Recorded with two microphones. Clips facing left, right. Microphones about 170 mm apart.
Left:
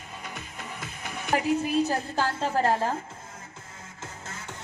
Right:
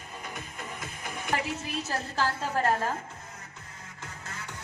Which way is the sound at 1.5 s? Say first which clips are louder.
Left 10 dB; 35° left (ahead or behind).